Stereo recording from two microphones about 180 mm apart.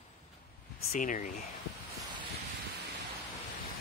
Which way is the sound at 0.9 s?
45° left (ahead or behind).